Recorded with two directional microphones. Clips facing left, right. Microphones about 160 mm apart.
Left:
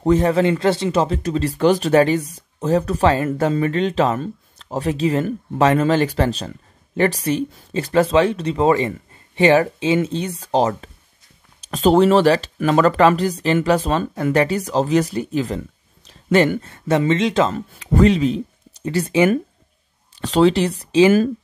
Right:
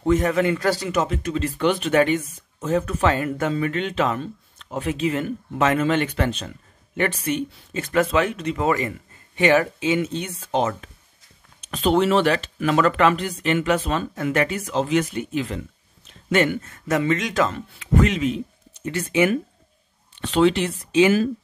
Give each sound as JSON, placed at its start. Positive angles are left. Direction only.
{"t": 0.0, "sound": "speech", "side_deg": 30}
{"t": 16.1, "sound": "a sound", "side_deg": 35}
{"t": 16.6, "sound": "speech", "side_deg": 30}
{"t": 17.6, "sound": "speech", "side_deg": 40}